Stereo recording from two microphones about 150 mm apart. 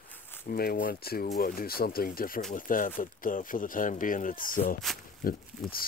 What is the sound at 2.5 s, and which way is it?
Speech, 65° left (ahead or behind).